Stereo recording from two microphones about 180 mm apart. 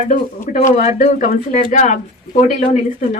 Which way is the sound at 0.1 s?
45° left (ahead or behind).